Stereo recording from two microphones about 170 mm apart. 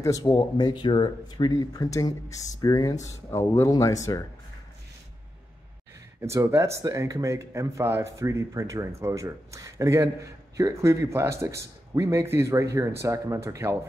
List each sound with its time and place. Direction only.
0.0 s speech: 20° left (ahead or behind)
6.2 s speech: 15° right (ahead or behind)